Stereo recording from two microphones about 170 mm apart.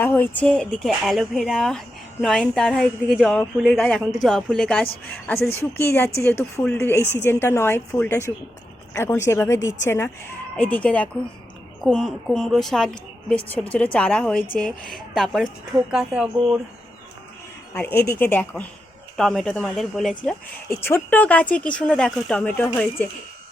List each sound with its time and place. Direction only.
0.0 s a woman's voice: 10° left (ahead or behind); by 16.6 s 5° right (ahead or behind)
17.7 s a woman's voice: 10° left (ahead or behind)
20.7 s speech: 15° left (ahead or behind)